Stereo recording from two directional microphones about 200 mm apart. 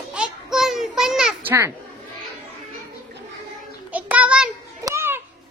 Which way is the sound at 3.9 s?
5° right (ahead or behind).